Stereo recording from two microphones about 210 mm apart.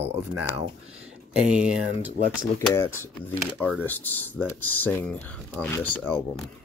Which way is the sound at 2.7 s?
15° left (ahead or behind).